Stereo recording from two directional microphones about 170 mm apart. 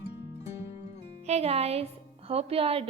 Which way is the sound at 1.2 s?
40° right (ahead or behind).